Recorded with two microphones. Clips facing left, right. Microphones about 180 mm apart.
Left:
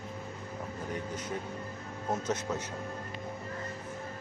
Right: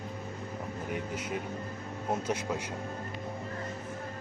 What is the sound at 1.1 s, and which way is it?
Speech, 10° right (ahead or behind).